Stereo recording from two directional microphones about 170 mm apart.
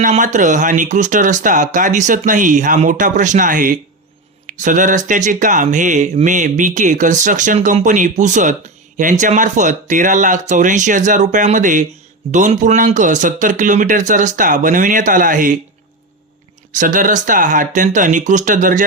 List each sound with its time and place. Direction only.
0.0 s speech: 45° right (ahead or behind)
16.7 s speech: 50° right (ahead or behind)